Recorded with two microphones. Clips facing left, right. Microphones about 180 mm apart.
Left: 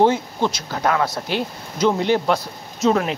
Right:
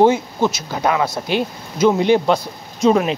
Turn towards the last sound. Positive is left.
turn(degrees=-15)  # may be behind; listen again after turning